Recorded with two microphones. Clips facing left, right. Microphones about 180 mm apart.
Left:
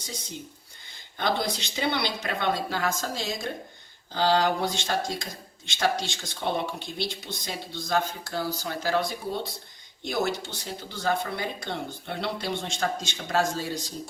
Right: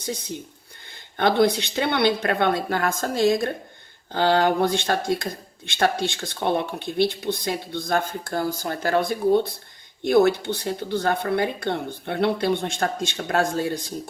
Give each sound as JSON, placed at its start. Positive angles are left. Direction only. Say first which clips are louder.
{"t": 0.0, "sound": "speech", "louder": "right 8 dB", "side_deg": -60}